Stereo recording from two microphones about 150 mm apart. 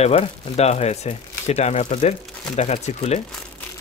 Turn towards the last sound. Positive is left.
turn(degrees=45)  # may be behind; listen again after turning